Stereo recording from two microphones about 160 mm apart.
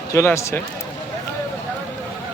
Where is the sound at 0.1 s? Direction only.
15° left (ahead or behind).